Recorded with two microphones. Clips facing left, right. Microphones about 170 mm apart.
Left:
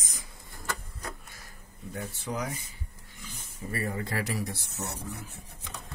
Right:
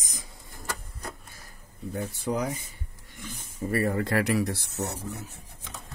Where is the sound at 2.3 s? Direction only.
35° right (ahead or behind).